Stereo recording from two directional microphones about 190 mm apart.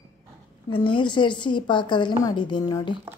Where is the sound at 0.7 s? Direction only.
25° left (ahead or behind).